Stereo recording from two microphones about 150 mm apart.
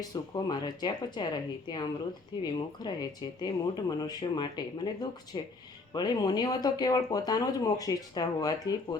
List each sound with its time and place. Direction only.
0.0 s speech: 25° left (ahead or behind)